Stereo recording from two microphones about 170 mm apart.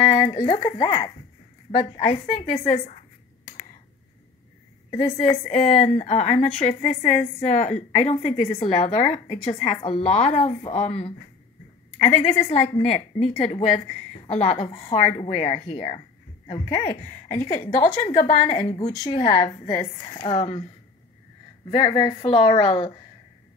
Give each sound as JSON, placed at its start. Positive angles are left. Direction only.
{"t": 0.0, "sound": "speech", "side_deg": 30}
{"t": 2.0, "sound": "a woman's voice", "side_deg": 40}
{"t": 4.9, "sound": "a woman's voice", "side_deg": 30}
{"t": 18.0, "sound": "a woman's voice", "side_deg": 35}
{"t": 21.6, "sound": "a woman's voice", "side_deg": 30}